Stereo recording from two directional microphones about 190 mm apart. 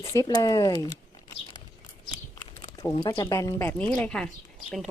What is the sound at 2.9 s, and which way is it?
Speech, 25° left (ahead or behind).